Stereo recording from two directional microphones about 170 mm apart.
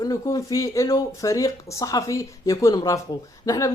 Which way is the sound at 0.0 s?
20° left (ahead or behind).